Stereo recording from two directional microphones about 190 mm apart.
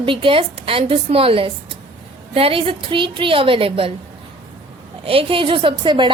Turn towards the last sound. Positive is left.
turn(degrees=-25)  # may be behind; listen again after turning